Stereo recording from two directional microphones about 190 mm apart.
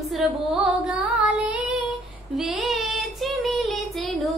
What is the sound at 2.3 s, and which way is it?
Child singing, centre (ahead or behind).